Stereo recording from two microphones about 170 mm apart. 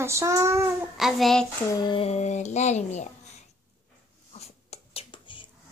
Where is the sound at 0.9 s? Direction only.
Centre (ahead or behind).